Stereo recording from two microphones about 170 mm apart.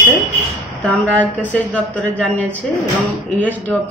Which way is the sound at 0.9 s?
10° left (ahead or behind).